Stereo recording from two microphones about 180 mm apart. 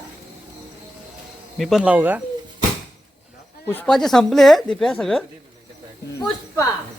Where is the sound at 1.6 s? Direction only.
Centre (ahead or behind).